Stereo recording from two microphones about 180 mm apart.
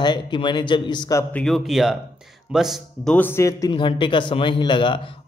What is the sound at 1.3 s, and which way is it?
Speech, centre (ahead or behind).